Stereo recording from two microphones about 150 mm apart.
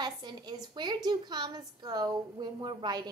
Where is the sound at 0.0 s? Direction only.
30° right (ahead or behind).